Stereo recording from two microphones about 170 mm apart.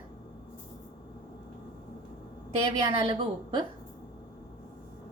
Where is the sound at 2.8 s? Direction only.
25° right (ahead or behind).